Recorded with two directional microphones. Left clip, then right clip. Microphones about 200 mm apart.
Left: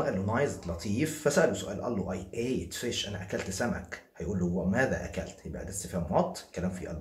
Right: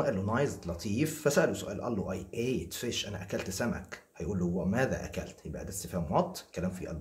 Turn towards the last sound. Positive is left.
turn(degrees=-30)  # may be behind; listen again after turning